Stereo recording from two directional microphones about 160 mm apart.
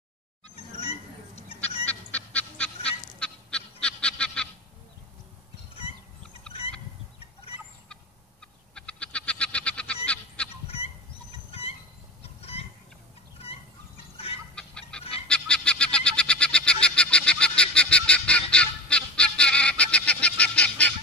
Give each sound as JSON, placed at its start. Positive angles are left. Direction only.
{"t": 0.7, "sound": "a sound", "side_deg": 40}
{"t": 1.9, "sound": "goose", "side_deg": 10}
{"t": 5.8, "sound": "a sound", "side_deg": 35}
{"t": 8.7, "sound": "bird", "side_deg": 5}
{"t": 10.0, "sound": "goose", "side_deg": 5}
{"t": 12.2, "sound": "cat", "side_deg": 40}
{"t": 14.1, "sound": "chicken", "side_deg": 40}
{"t": 14.5, "sound": "chicken", "side_deg": 5}
{"t": 15.2, "sound": "a sound", "side_deg": 5}
{"t": 16.8, "sound": "honk", "side_deg": 5}